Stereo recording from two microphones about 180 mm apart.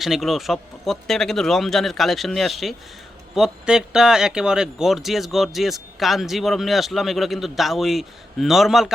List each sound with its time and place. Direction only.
0.0 s speech: centre (ahead or behind)